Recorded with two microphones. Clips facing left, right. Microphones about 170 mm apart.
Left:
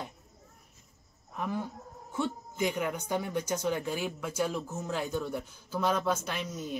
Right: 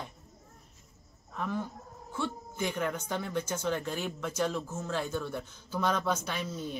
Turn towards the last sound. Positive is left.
turn(degrees=5)  # may be behind; listen again after turning